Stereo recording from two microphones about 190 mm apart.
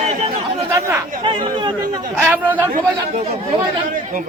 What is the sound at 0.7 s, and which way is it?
Chatter, 15° right (ahead or behind).